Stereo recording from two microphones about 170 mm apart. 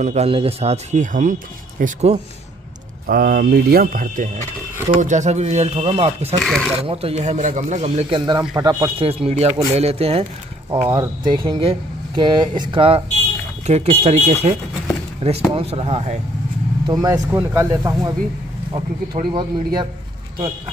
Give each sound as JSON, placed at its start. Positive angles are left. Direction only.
{"t": 0.0, "sound": "speech", "side_deg": -40}
{"t": 3.1, "sound": "speech", "side_deg": -65}
{"t": 6.4, "sound": "speech", "side_deg": 0}
{"t": 6.9, "sound": "speech", "side_deg": -35}
{"t": 8.3, "sound": "a man's voice", "side_deg": -25}
{"t": 9.0, "sound": "speech", "side_deg": -35}
{"t": 10.9, "sound": "a man's voice", "side_deg": -25}
{"t": 16.8, "sound": "a man's voice", "side_deg": -20}
{"t": 18.7, "sound": "a man's voice", "side_deg": -30}